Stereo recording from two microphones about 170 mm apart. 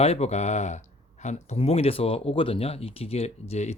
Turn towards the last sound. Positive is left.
turn(degrees=40)  # may be behind; listen again after turning